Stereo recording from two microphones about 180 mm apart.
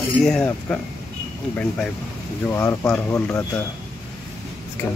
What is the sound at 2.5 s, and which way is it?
Speech, 15° left (ahead or behind).